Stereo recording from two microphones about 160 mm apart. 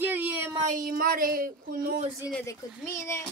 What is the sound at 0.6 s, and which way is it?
Speech, 60° right (ahead or behind).